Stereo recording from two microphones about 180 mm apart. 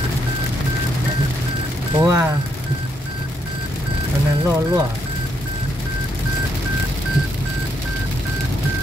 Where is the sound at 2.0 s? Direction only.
15° right (ahead or behind).